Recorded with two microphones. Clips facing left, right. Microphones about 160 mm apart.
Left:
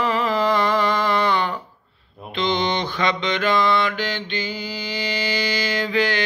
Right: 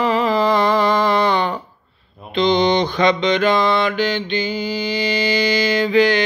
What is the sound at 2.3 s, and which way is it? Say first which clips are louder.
Mantra: right 7 dB; 20° right (ahead or behind).